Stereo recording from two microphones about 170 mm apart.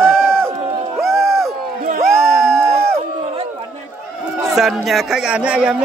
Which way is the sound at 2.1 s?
15° right (ahead or behind).